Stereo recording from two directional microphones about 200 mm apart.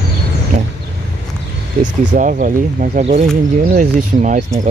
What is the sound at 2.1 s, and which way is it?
Speech, 40° right (ahead or behind).